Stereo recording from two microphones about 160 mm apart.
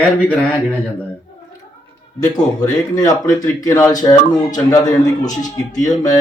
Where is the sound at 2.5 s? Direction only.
25° left (ahead or behind).